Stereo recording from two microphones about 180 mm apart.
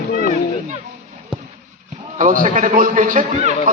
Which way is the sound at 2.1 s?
45° right (ahead or behind).